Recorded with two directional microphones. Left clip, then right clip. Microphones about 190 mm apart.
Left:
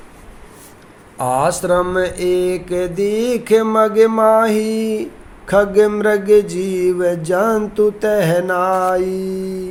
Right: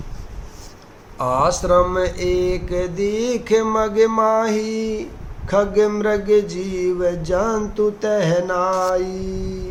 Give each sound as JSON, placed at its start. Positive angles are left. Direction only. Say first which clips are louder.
{"t": 1.2, "sound": "mantra", "louder": "left 2 dB", "side_deg": 30}